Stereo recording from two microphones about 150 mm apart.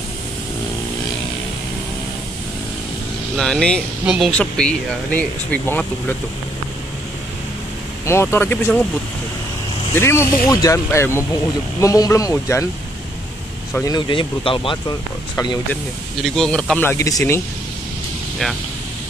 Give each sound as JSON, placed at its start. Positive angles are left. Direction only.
{"t": 3.3, "sound": "speech", "side_deg": 5}
{"t": 4.0, "sound": "speech", "side_deg": -5}
{"t": 4.3, "sound": "speech", "side_deg": 5}
{"t": 8.0, "sound": "speech", "side_deg": 15}
{"t": 9.9, "sound": "speech", "side_deg": 15}
{"t": 13.8, "sound": "speech", "side_deg": 30}
{"t": 15.7, "sound": "speech", "side_deg": 0}